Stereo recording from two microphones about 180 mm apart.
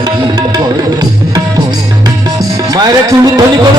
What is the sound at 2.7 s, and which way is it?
Music, 20° right (ahead or behind).